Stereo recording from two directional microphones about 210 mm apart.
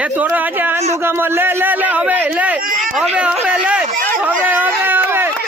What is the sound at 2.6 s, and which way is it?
Speech, 40° right (ahead or behind).